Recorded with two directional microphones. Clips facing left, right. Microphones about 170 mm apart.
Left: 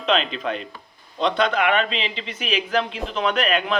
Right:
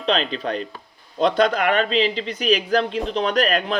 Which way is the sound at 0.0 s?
35° right (ahead or behind).